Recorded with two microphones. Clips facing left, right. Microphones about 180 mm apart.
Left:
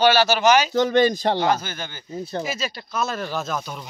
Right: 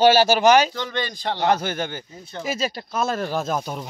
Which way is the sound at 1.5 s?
60° right (ahead or behind).